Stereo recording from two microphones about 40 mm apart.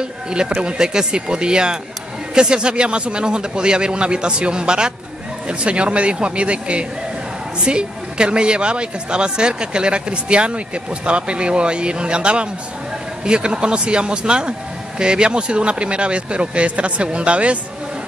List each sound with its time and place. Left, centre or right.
0.6 s a woman's voice: right